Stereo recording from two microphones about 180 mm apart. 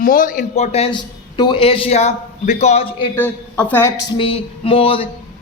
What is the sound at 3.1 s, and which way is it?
Speech, 10° left (ahead or behind).